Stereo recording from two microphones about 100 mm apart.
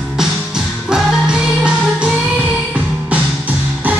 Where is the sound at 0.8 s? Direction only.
10° right (ahead or behind).